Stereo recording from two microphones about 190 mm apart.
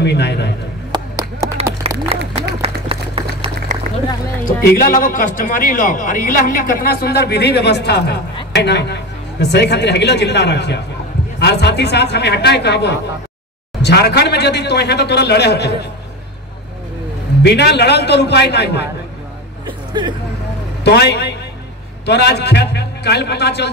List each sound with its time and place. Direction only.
0.0 s speech: 65° left (ahead or behind)
0.9 s a sound: 15° right (ahead or behind)
1.8 s a sound: 30° right (ahead or behind)
2.6 s run: 30° right (ahead or behind)
4.6 s a man's voice: 50° left (ahead or behind)
17.4 s speech: 60° left (ahead or behind)
19.9 s speech: 25° right (ahead or behind)
20.8 s speech: 60° left (ahead or behind)